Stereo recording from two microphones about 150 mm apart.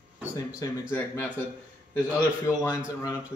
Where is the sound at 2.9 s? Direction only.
20° left (ahead or behind).